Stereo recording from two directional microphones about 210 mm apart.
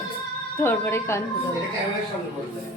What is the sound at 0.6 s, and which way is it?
Speech, 10° left (ahead or behind).